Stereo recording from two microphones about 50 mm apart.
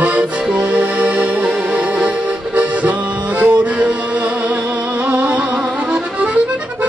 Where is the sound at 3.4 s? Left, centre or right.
Right.